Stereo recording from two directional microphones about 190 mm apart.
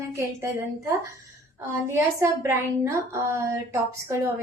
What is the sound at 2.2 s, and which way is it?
A woman's voice, 15° right (ahead or behind).